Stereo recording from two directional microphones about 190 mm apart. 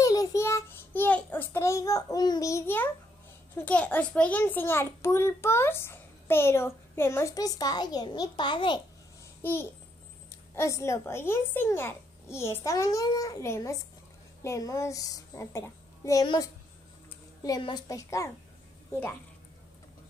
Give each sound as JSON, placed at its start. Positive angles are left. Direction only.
{"t": 0.0, "sound": "child singing", "side_deg": 15}
{"t": 3.5, "sound": "a child's voice", "side_deg": 5}
{"t": 9.4, "sound": "a child's voice", "side_deg": 10}